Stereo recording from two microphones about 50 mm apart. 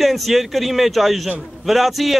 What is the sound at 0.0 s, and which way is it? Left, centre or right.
A man's voice, centre.